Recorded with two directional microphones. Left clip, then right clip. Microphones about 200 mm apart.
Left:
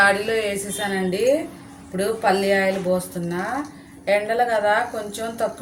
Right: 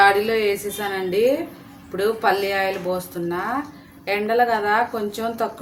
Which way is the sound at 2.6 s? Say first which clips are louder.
Left 2 dB; 40° right (ahead or behind).